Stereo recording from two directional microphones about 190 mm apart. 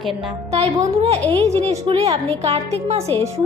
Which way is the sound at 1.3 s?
30° right (ahead or behind).